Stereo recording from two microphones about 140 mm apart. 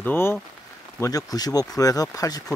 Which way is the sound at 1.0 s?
25° left (ahead or behind).